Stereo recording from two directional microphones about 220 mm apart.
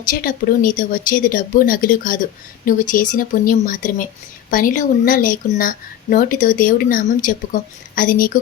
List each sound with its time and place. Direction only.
0.1 s speech: 40° left (ahead or behind)